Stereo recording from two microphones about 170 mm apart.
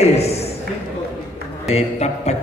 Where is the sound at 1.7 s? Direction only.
40° left (ahead or behind).